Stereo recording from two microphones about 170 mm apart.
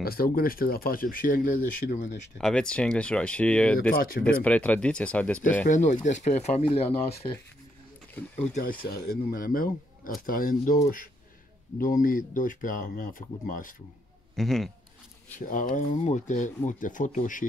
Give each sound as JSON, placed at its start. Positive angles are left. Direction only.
{"t": 0.0, "sound": "speech", "side_deg": 60}
{"t": 2.3, "sound": "speech", "side_deg": 5}
{"t": 3.9, "sound": "speech", "side_deg": 55}
{"t": 4.2, "sound": "speech", "side_deg": 10}
{"t": 5.7, "sound": "speech", "side_deg": 45}
{"t": 9.4, "sound": "speech", "side_deg": 55}
{"t": 14.3, "sound": "speech", "side_deg": 0}
{"t": 15.4, "sound": "speech", "side_deg": 50}